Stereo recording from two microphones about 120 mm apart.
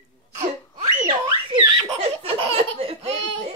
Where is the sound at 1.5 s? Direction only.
50° right (ahead or behind).